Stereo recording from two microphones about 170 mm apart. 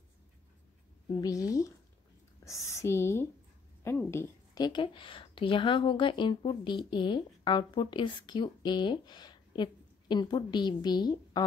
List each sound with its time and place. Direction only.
1.2 s a woman's voice: 20° left (ahead or behind)